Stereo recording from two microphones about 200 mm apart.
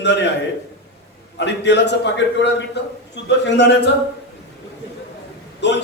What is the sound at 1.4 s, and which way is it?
A man's voice, 60° left (ahead or behind).